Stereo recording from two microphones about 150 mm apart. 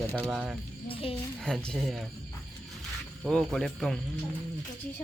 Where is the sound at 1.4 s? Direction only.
5° left (ahead or behind).